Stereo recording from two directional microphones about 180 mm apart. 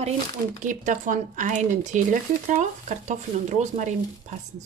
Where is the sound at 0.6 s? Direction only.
45° right (ahead or behind).